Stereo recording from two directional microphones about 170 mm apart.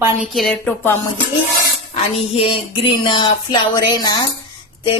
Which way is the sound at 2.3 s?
30° left (ahead or behind).